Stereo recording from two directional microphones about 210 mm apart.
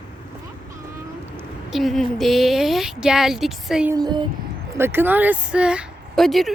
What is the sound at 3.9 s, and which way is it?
A child's voice, 20° right (ahead or behind).